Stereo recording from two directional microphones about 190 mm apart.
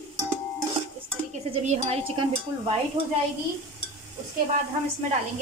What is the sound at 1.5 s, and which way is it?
Speech, 35° right (ahead or behind).